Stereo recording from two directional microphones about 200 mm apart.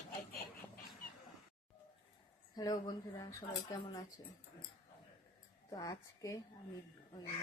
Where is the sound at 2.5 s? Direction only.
20° left (ahead or behind).